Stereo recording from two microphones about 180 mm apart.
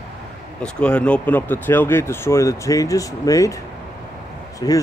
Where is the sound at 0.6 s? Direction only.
5° left (ahead or behind).